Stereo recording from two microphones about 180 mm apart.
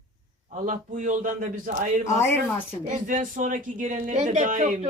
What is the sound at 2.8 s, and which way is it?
Speech, 45° right (ahead or behind).